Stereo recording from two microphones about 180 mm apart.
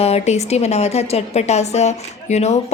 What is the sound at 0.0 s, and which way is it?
A woman's voice, 35° left (ahead or behind).